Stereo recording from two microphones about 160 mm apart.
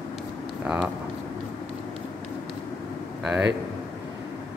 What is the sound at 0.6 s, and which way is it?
Speech, 10° right (ahead or behind).